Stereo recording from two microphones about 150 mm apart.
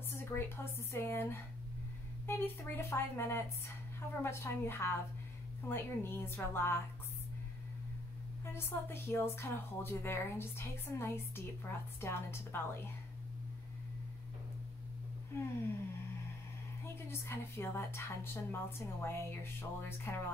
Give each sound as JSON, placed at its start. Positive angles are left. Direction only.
{"t": 0.1, "sound": "a woman's voice", "side_deg": 15}
{"t": 8.5, "sound": "a woman's voice", "side_deg": 15}
{"t": 15.3, "sound": "a woman's voice", "side_deg": 15}
{"t": 16.8, "sound": "a woman's voice", "side_deg": 15}